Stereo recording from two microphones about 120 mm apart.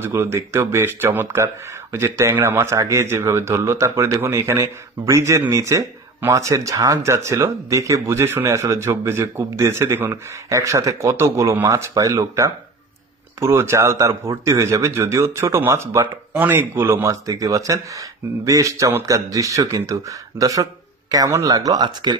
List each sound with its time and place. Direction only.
0.0 s speech: 20° right (ahead or behind)